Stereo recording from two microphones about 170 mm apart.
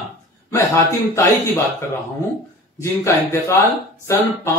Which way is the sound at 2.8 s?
15° left (ahead or behind).